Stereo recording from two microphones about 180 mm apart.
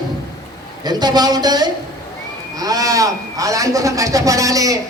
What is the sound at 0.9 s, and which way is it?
A man's voice, 20° right (ahead or behind).